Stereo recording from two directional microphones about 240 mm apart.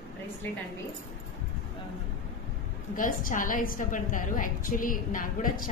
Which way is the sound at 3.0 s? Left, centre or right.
Left.